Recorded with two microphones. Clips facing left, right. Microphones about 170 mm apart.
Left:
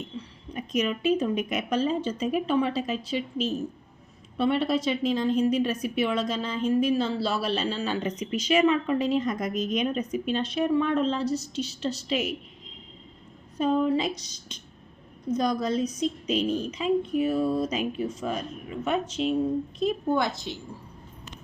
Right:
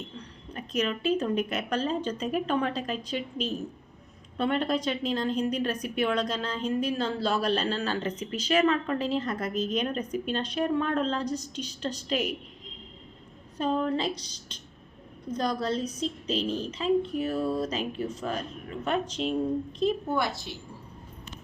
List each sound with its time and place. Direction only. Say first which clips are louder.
0.2 s a woman's voice: left 4 dB; 10° left (ahead or behind)
9.6 s a woman's voice: right 2 dB; 30° right (ahead or behind)
9.8 s a woman's voice: left 3 dB; 10° left (ahead or behind)
13.6 s a woman's voice: left 4 dB; 10° left (ahead or behind)
15.3 s a woman's voice: left 3 dB; 10° left (ahead or behind)
19.8 s a woman's voice: left 2 dB; 15° left (ahead or behind)